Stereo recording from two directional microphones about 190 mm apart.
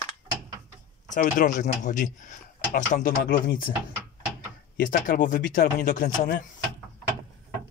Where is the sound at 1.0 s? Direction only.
40° left (ahead or behind).